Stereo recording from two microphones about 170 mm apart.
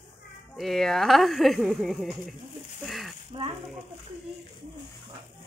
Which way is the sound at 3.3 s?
35° right (ahead or behind).